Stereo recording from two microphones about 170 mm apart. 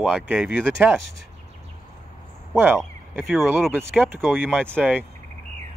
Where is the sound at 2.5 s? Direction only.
15° right (ahead or behind).